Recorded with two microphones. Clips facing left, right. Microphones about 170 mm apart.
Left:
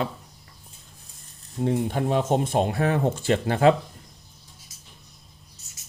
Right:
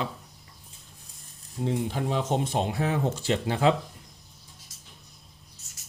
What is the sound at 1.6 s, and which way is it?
Speech, 50° left (ahead or behind).